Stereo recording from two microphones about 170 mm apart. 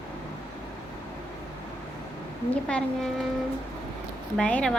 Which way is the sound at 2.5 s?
5° left (ahead or behind).